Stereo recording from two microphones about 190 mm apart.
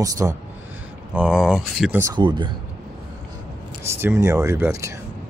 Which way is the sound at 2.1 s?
25° right (ahead or behind).